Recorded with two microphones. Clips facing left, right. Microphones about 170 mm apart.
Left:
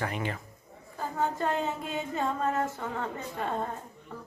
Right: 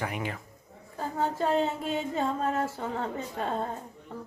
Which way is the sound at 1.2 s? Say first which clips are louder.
Right 3 dB; 30° right (ahead or behind).